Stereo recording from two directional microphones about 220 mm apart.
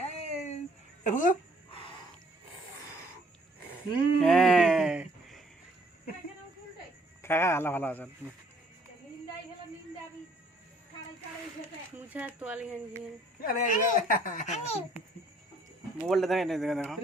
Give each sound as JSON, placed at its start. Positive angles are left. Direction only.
{"t": 0.0, "sound": "a sound", "side_deg": 30}
{"t": 1.0, "sound": "speech", "side_deg": 35}
{"t": 4.2, "sound": "a sound", "side_deg": 5}
{"t": 7.2, "sound": "a man's voice", "side_deg": 10}
{"t": 11.9, "sound": "speech", "side_deg": -5}
{"t": 13.4, "sound": "speech", "side_deg": 40}
{"t": 16.0, "sound": "speech", "side_deg": 0}